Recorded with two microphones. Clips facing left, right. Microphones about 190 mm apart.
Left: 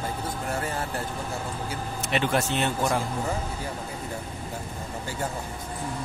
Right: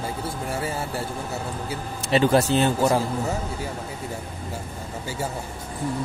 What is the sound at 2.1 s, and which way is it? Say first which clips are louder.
Speech: right 7 dB; 35° right (ahead or behind).